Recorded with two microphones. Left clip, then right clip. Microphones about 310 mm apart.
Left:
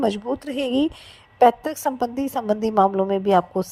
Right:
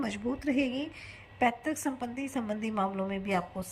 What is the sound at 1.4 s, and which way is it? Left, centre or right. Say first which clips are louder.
A woman's voice: left 13 dB; left.